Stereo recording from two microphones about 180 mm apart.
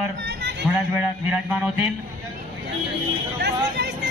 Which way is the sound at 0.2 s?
70° right (ahead or behind).